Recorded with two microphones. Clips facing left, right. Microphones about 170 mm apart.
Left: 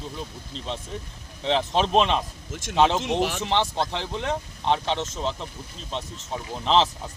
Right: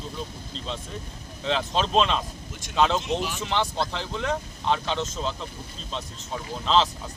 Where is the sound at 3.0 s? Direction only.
70° left (ahead or behind).